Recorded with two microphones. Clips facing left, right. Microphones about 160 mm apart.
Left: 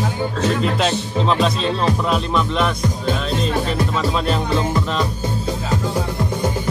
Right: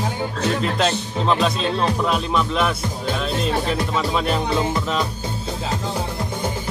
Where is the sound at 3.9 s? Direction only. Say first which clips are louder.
Left 1 dB; 5° right (ahead or behind).